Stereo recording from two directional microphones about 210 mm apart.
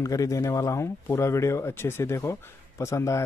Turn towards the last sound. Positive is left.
turn(degrees=15)  # may be behind; listen again after turning